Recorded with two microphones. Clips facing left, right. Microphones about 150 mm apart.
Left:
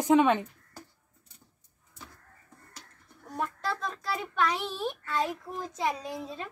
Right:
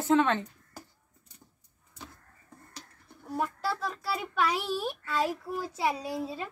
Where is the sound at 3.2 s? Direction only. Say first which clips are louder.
Right 2 dB; 5° right (ahead or behind).